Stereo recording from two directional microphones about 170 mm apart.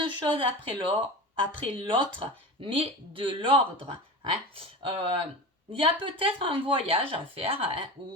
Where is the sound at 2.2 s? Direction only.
30° right (ahead or behind).